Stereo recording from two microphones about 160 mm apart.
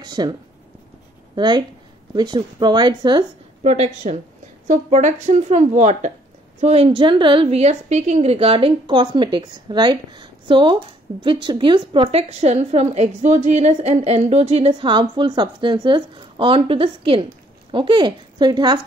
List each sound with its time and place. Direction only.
0.0 s a woman's voice: 25° right (ahead or behind)
3.6 s a woman's voice: 45° right (ahead or behind); by 18.8 s 25° right (ahead or behind)